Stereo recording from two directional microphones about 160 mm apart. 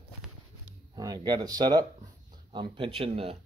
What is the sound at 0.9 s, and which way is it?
Speech, 25° right (ahead or behind).